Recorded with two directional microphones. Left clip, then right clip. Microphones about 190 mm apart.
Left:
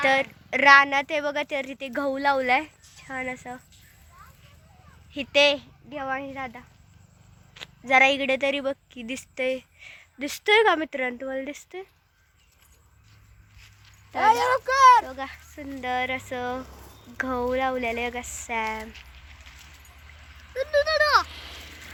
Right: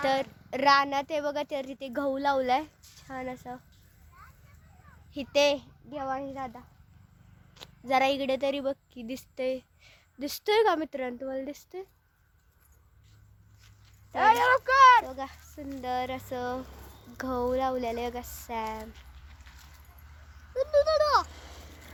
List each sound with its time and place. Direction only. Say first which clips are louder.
0.0 s a woman's voice: left 6 dB; centre (ahead or behind)
5.1 s a woman's voice: left 5 dB; centre (ahead or behind)
14.2 s a child's voice: left 2 dB; 35° left (ahead or behind)
15.0 s a woman's voice: left 3 dB; 5° right (ahead or behind)
20.5 s speech: left 1 dB; 15° right (ahead or behind)
21.2 s a sound: left 9 dB; 30° right (ahead or behind)